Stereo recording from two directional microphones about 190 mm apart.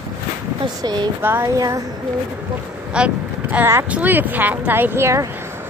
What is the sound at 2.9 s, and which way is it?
Speech, 5° right (ahead or behind).